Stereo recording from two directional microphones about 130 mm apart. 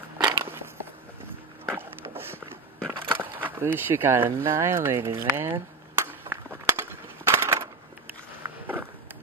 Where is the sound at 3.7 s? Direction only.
15° right (ahead or behind).